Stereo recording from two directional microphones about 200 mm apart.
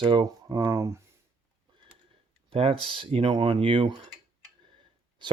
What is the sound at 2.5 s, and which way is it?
Speech, 30° right (ahead or behind).